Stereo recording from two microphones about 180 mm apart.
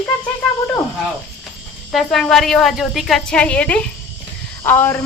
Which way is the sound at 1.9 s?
Centre (ahead or behind).